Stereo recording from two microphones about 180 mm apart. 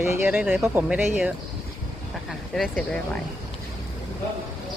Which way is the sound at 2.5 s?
5° left (ahead or behind).